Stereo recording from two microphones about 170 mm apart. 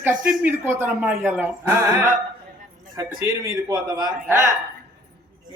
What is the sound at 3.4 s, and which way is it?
A man's voice, 25° right (ahead or behind).